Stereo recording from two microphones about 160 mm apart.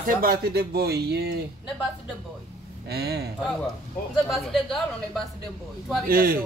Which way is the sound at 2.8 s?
90° right.